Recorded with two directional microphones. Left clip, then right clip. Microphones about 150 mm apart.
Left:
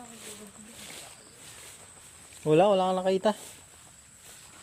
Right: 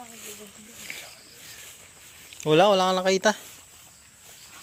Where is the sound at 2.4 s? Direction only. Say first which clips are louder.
Right 3 dB; 10° right (ahead or behind).